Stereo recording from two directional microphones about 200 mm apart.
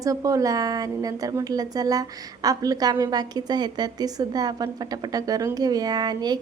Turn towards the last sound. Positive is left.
turn(degrees=-20)  # may be behind; listen again after turning